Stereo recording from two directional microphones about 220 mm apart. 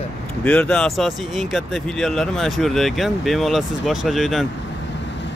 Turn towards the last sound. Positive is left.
turn(degrees=0)  # may be behind; listen again after turning